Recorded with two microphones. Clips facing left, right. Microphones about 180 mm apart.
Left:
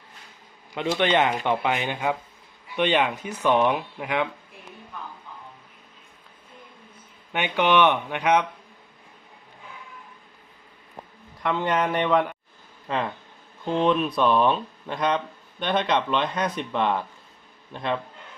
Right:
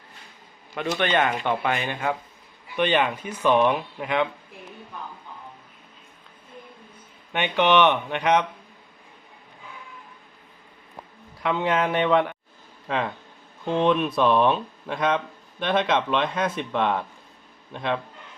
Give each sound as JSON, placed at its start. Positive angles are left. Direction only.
{"t": 0.7, "sound": "speech", "side_deg": 15}
{"t": 7.3, "sound": "speech", "side_deg": 10}
{"t": 11.4, "sound": "speech", "side_deg": 0}